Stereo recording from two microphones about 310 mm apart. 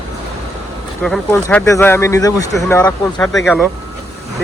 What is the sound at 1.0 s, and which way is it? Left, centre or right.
Speech, centre.